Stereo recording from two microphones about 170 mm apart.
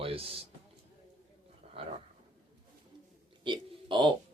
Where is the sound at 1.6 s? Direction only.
35° right (ahead or behind).